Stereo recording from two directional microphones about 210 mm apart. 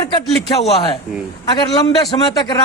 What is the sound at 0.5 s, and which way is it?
A man's voice, 30° left (ahead or behind).